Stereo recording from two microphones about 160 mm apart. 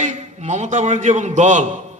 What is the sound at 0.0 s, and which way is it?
A man's voice, 45° right (ahead or behind).